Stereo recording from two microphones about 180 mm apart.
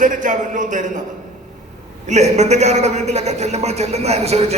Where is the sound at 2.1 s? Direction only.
40° right (ahead or behind).